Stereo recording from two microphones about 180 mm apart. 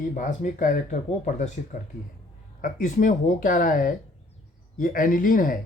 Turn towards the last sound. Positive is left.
turn(degrees=50)  # may be behind; listen again after turning